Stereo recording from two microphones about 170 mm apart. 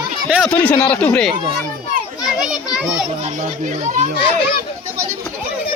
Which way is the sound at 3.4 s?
45° right (ahead or behind).